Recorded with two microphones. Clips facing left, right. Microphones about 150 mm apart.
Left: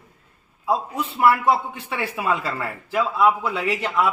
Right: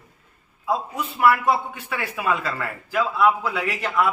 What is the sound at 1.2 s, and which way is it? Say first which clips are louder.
A man's voice: left 1 dB; 30° left (ahead or behind).